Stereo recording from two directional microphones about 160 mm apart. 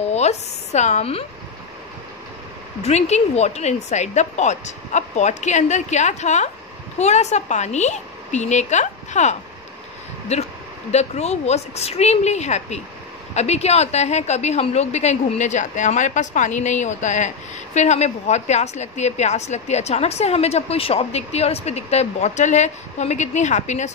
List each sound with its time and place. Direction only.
0.1 s speech: 45° left (ahead or behind)
2.8 s a woman's voice: 45° left (ahead or behind)